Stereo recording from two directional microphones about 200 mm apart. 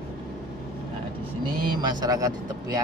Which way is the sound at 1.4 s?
20° right (ahead or behind).